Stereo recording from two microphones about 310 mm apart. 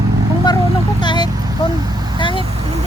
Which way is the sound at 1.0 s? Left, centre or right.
Centre.